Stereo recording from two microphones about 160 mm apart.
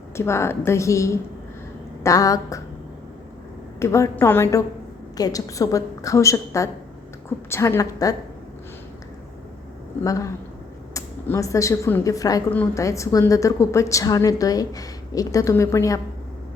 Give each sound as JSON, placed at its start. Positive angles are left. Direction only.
{"t": 0.2, "sound": "a woman's voice", "side_deg": 15}
{"t": 3.8, "sound": "a woman's voice", "side_deg": 20}
{"t": 10.0, "sound": "a woman's voice", "side_deg": 20}